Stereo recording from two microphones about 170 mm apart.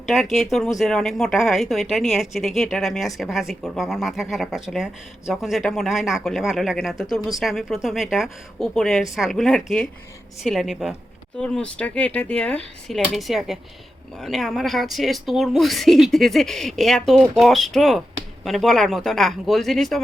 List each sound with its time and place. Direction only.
0.0 s speech: centre (ahead or behind)